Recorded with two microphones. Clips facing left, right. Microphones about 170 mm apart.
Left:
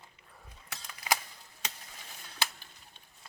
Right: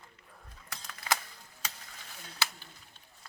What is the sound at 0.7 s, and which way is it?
Mechanisms, 10° left (ahead or behind).